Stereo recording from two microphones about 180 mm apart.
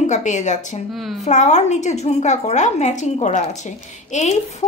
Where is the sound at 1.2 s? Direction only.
40° left (ahead or behind).